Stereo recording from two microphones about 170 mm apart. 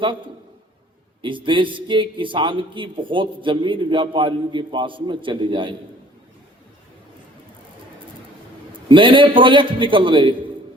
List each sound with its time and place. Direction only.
1.2 s a man's voice: 30° right (ahead or behind)
8.9 s a man's voice: 30° right (ahead or behind)